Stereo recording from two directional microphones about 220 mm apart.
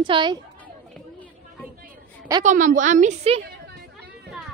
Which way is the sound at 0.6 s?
5° left (ahead or behind).